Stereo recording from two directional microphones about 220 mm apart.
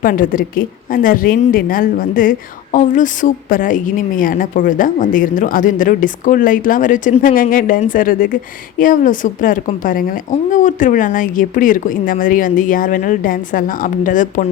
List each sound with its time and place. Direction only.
0.0 s a woman's voice: 40° left (ahead or behind)